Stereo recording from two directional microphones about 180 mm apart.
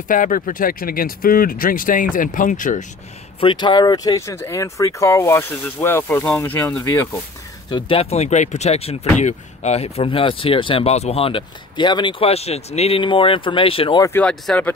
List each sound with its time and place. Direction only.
0.1 s speech: 50° left (ahead or behind)
3.3 s speech: 25° left (ahead or behind); by 7.1 s 10° left (ahead or behind)
7.7 s speech: 30° left (ahead or behind)
14.0 s speech: 10° left (ahead or behind)